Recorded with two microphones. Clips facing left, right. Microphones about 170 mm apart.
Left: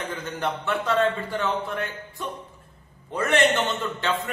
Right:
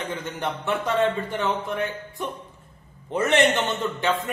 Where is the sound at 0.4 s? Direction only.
15° right (ahead or behind).